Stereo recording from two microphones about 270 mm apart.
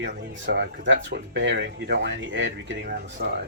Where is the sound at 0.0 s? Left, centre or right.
Right.